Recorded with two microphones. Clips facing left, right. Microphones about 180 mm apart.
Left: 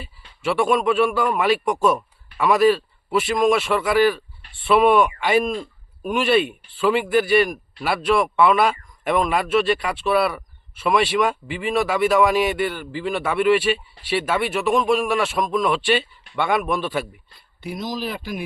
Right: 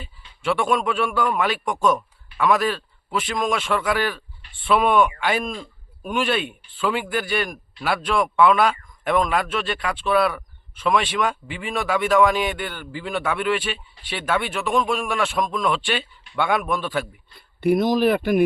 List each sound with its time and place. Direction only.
0.0 s speech: 5° left (ahead or behind)
17.6 s speech: 60° right (ahead or behind)